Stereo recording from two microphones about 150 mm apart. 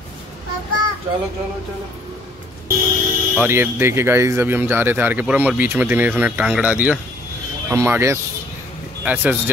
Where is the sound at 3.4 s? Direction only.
15° right (ahead or behind).